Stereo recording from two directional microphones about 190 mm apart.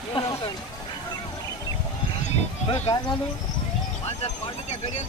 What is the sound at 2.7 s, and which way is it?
Speech, 25° left (ahead or behind).